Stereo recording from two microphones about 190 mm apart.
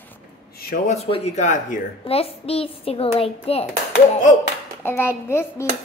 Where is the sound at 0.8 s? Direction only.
30° left (ahead or behind).